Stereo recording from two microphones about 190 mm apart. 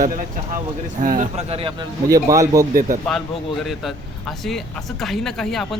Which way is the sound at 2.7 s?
45° right (ahead or behind).